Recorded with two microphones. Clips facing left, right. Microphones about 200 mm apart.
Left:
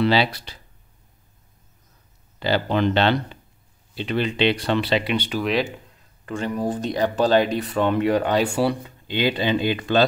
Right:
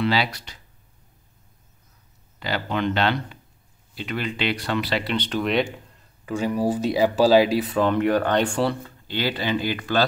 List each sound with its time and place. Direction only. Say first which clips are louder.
0.0 s speech: left 4 dB; 30° left (ahead or behind)
2.4 s speech: left 4 dB; 30° left (ahead or behind)
5.0 s speech: left 1 dB; 10° left (ahead or behind)